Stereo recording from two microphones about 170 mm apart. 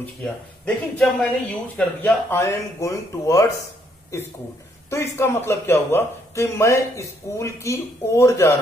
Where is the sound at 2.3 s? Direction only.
15° left (ahead or behind).